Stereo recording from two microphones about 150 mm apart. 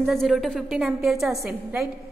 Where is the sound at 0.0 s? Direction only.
Centre (ahead or behind).